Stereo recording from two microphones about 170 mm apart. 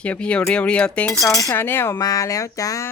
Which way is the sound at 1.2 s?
20° left (ahead or behind).